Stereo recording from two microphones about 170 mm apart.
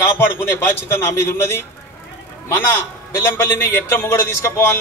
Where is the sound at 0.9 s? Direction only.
15° left (ahead or behind).